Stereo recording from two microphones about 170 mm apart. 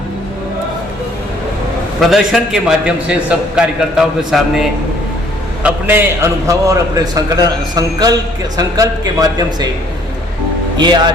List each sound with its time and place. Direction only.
2.0 s a man's voice: centre (ahead or behind)
5.6 s a man's voice: 10° right (ahead or behind)
10.8 s a man's voice: 25° right (ahead or behind)